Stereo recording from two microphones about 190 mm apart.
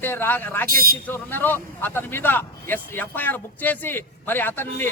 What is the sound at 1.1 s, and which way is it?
Speech, 10° left (ahead or behind).